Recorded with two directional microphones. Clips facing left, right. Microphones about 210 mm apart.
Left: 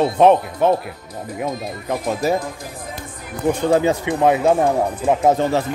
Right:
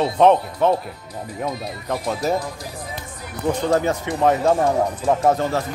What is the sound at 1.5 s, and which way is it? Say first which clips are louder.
Speech: left 2 dB; 50° left (ahead or behind).